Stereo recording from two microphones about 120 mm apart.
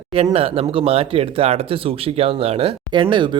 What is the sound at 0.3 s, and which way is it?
A man's voice, 55° right (ahead or behind).